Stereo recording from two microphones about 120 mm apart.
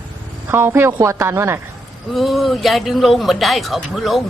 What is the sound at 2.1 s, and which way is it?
Speech, centre (ahead or behind).